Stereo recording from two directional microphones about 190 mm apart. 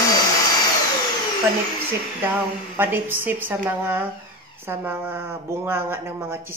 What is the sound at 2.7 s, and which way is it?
Speech, 10° right (ahead or behind).